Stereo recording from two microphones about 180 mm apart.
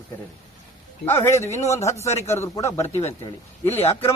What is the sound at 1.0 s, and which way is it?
A man's voice, 15° left (ahead or behind).